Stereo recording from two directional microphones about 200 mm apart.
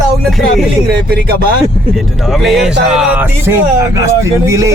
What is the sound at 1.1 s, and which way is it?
Speech, 55° right (ahead or behind).